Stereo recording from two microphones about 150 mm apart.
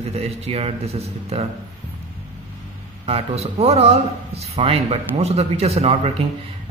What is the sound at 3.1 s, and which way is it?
Speech, 45° right (ahead or behind).